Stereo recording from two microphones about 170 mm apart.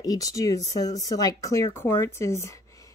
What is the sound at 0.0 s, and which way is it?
Speech, 20° left (ahead or behind).